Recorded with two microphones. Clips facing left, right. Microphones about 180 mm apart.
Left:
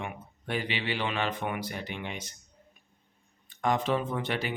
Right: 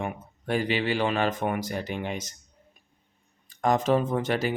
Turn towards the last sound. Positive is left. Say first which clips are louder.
# right 6 dB
turn(degrees=-40)  # may be behind; listen again after turning